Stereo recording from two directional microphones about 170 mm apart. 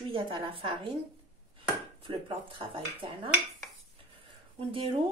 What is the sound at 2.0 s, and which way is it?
Speech, 30° right (ahead or behind).